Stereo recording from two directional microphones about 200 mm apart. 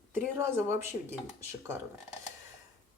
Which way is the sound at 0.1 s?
10° right (ahead or behind).